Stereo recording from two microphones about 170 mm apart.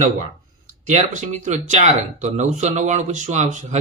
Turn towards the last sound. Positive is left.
turn(degrees=-45)  # may be behind; listen again after turning